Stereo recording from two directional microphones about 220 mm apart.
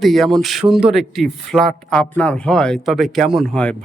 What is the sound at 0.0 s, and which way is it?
Speech, centre (ahead or behind).